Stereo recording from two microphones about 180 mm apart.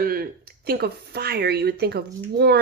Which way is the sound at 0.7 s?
60° right (ahead or behind).